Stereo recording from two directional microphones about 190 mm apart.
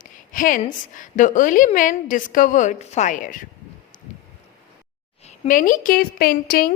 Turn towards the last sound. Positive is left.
turn(degrees=50)  # may be behind; listen again after turning